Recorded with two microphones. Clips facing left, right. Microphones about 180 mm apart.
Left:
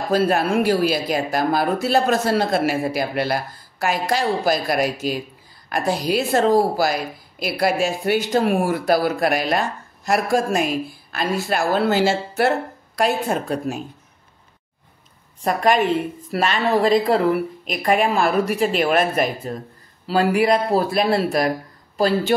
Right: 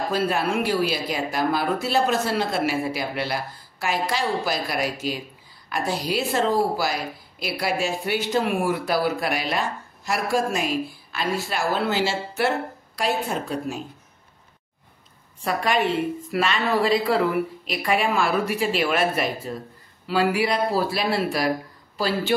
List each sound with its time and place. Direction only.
0.1 s speech: 45° left (ahead or behind)
15.4 s speech: 45° left (ahead or behind)